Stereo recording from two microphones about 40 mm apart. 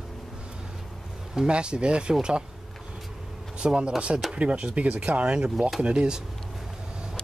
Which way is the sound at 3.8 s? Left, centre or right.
Right.